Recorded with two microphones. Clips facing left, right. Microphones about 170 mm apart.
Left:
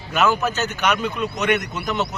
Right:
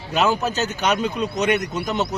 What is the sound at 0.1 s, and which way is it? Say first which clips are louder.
Speech: even; 35° right (ahead or behind).